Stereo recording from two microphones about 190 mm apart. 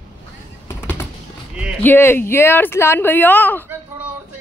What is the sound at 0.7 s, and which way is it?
Fireworks, 10° left (ahead or behind).